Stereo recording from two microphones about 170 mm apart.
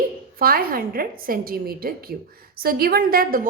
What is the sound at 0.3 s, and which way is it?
A woman's voice, 60° right (ahead or behind).